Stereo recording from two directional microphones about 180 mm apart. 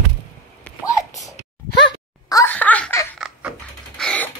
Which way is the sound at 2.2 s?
20° left (ahead or behind).